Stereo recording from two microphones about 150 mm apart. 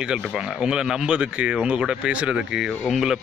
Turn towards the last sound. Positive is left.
turn(degrees=0)  # may be behind; listen again after turning